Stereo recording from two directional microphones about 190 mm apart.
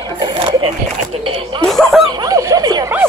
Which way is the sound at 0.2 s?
25° right (ahead or behind).